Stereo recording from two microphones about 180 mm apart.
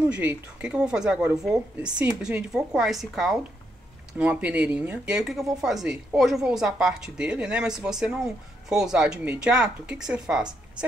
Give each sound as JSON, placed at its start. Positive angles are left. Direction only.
{"t": 0.1, "sound": "speech", "side_deg": -5}